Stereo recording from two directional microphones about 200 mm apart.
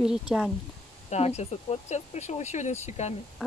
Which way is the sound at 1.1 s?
35° left (ahead or behind).